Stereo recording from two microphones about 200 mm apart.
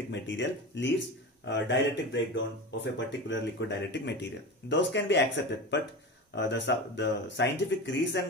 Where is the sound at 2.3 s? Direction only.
65° left (ahead or behind).